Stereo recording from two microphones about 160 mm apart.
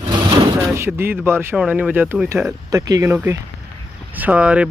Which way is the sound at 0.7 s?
15° right (ahead or behind).